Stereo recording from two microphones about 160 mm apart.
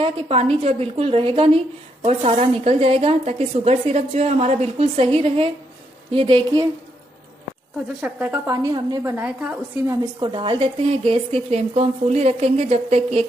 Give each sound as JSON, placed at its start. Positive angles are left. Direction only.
{"t": 0.0, "sound": "a woman's voice", "side_deg": -35}
{"t": 8.0, "sound": "a woman's voice", "side_deg": -10}
{"t": 8.6, "sound": "a woman's voice", "side_deg": -25}
{"t": 9.1, "sound": "a woman's voice", "side_deg": -10}
{"t": 9.8, "sound": "a woman's voice", "side_deg": -30}